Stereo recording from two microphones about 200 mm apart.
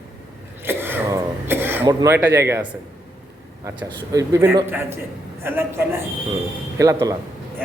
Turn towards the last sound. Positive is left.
turn(degrees=-15)  # may be behind; listen again after turning